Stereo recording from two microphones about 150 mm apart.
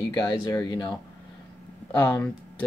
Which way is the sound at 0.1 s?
25° left (ahead or behind).